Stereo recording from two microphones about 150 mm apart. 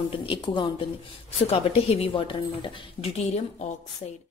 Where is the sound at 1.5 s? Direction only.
40° left (ahead or behind).